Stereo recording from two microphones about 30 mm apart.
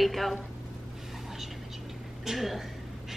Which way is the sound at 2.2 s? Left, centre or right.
Centre.